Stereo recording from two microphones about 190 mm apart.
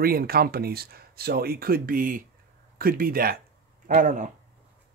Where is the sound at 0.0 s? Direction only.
50° right (ahead or behind).